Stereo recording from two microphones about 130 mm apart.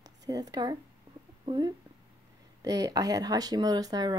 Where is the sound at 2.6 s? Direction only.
30° right (ahead or behind).